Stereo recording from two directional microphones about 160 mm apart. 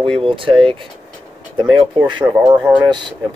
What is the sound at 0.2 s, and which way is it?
Speech, 35° right (ahead or behind).